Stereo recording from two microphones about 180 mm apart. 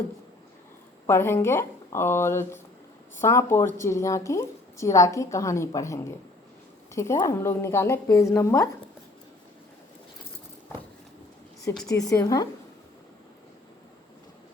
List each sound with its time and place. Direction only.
1.0 s a woman's voice: 15° left (ahead or behind)
11.9 s a woman's voice: 20° left (ahead or behind)